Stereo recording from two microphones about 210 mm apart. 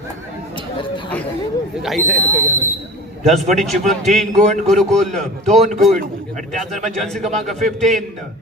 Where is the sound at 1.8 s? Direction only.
5° left (ahead or behind).